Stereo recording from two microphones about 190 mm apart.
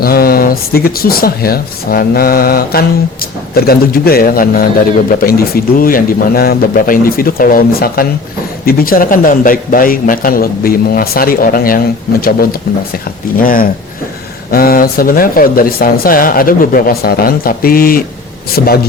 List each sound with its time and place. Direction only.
0.0 s speech: 50° left (ahead or behind)